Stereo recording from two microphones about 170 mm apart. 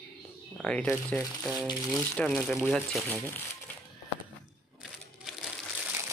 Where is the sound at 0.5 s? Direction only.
5° left (ahead or behind).